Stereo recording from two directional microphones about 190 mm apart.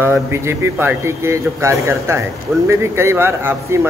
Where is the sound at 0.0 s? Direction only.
15° right (ahead or behind).